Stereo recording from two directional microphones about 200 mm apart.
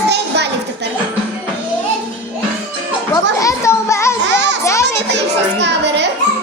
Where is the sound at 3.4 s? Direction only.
15° left (ahead or behind).